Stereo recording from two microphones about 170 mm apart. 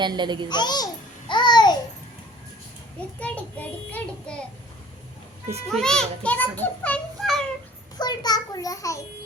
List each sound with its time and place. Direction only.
0.0 s a child's voice: 25° right (ahead or behind)
0.4 s a child's voice: 25° left (ahead or behind)
1.3 s babbling: 25° left (ahead or behind)
3.2 s a child's voice: 10° left (ahead or behind)
5.6 s a child's voice: 5° left (ahead or behind)
7.9 s a child's voice: 25° left (ahead or behind)